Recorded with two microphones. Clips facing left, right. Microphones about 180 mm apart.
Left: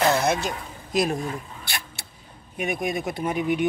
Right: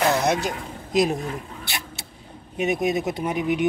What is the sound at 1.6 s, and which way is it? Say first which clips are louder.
Vehicle: right 2 dB; 20° right (ahead or behind).